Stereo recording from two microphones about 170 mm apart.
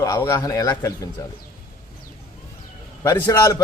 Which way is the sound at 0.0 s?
20° left (ahead or behind).